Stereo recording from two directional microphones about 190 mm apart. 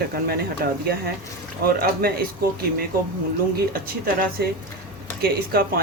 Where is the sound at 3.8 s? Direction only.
50° right (ahead or behind).